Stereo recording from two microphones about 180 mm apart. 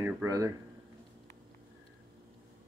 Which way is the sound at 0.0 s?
15° right (ahead or behind).